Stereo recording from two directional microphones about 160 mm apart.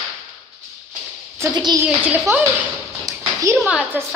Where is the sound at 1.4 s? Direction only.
25° right (ahead or behind).